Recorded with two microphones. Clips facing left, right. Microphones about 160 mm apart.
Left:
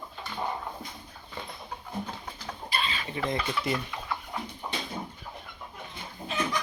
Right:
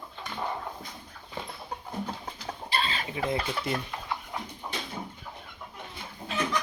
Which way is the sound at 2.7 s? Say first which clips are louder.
Right 2 dB; 40° right (ahead or behind).